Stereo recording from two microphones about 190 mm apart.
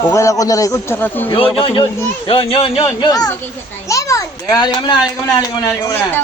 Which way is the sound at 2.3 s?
25° left (ahead or behind).